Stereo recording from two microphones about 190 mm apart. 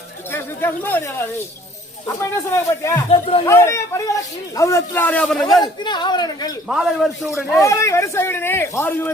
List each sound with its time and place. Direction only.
0.3 s speech: 10° left (ahead or behind)
2.6 s speech: 15° left (ahead or behind)
3.1 s speech: 30° left (ahead or behind)
3.4 s speech: 15° left (ahead or behind)
5.6 s a man's voice: 25° left (ahead or behind)
6.7 s a man's voice: centre (ahead or behind)
7.5 s speech: 15° left (ahead or behind)